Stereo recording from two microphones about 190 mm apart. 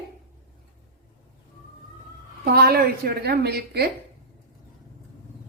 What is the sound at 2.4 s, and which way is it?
A woman's voice, 55° right (ahead or behind).